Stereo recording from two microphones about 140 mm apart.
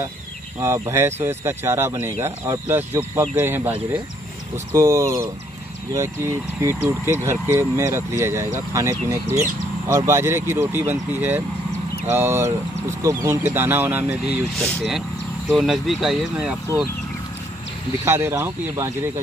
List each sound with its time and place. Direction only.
0.6 s speech: 20° right (ahead or behind)
14.6 s speech: 5° left (ahead or behind)
18.0 s speech: 20° right (ahead or behind)